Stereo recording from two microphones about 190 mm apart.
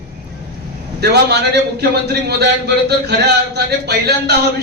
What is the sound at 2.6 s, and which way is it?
Speech, 60° right (ahead or behind).